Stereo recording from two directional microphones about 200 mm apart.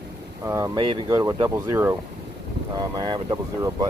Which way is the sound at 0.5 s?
15° right (ahead or behind).